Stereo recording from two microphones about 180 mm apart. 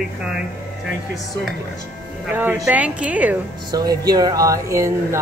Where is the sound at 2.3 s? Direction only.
10° right (ahead or behind).